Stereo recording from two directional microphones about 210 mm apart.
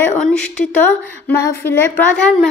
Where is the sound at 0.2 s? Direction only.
5° left (ahead or behind).